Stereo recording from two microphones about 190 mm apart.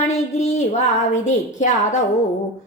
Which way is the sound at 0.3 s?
35° left (ahead or behind).